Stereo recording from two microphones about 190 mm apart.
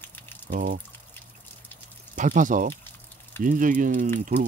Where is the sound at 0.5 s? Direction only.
45° right (ahead or behind).